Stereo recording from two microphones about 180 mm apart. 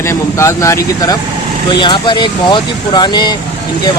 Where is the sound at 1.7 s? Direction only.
30° left (ahead or behind).